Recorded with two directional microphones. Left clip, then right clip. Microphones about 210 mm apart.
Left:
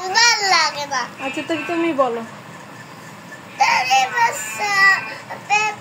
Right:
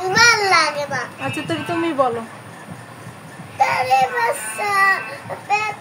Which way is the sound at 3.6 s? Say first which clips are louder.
Left 1 dB; 15° right (ahead or behind).